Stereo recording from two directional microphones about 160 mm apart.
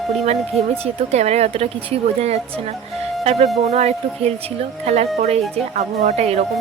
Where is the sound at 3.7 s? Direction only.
40° right (ahead or behind).